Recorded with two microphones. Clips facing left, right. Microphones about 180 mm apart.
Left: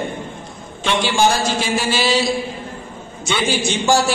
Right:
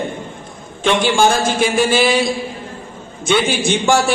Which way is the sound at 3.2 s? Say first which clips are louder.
Right 4 dB; 55° right (ahead or behind).